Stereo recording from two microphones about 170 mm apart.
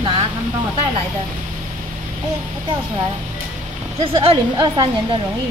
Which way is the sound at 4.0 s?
30° right (ahead or behind).